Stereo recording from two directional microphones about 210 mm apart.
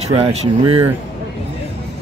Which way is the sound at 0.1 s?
30° right (ahead or behind).